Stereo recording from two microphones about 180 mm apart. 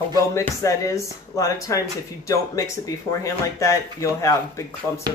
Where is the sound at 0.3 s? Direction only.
15° left (ahead or behind).